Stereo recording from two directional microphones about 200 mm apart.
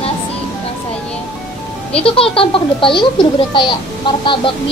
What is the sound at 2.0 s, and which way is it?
Speech, 25° left (ahead or behind).